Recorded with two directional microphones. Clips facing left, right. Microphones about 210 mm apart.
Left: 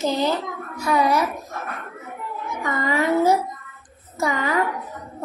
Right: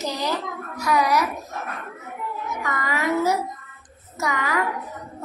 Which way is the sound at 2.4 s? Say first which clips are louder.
Left 5 dB; 25° left (ahead or behind).